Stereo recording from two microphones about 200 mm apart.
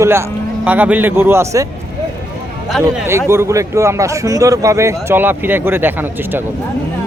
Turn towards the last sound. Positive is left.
turn(degrees=-10)  # may be behind; listen again after turning